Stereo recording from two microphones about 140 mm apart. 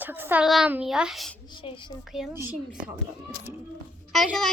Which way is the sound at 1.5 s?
35° left (ahead or behind).